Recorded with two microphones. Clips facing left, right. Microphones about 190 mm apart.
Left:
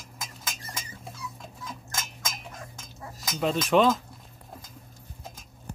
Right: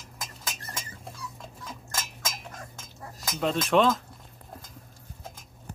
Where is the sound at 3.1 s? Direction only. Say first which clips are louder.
Left 1 dB; centre (ahead or behind).